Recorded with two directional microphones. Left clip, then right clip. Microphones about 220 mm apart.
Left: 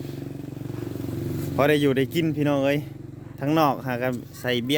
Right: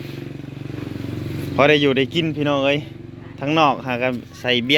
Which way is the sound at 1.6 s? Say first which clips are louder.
Right 6 dB; 10° left (ahead or behind).